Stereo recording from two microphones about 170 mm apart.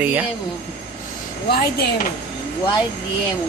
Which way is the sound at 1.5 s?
65° left (ahead or behind).